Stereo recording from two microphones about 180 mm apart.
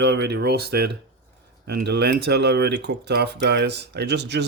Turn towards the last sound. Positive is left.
turn(degrees=-70)  # may be behind; listen again after turning